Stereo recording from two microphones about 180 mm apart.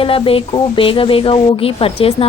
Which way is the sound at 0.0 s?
30° left (ahead or behind).